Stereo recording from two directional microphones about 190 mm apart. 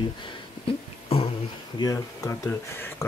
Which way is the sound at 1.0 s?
30° left (ahead or behind).